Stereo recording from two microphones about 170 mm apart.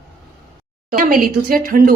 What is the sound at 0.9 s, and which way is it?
A woman's voice, 55° right (ahead or behind).